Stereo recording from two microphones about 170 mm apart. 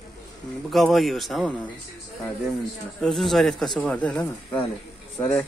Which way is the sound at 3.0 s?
Centre (ahead or behind).